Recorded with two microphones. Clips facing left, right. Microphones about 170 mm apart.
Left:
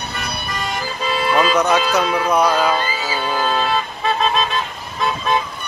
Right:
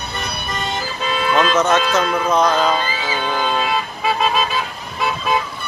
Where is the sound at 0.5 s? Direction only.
25° right (ahead or behind).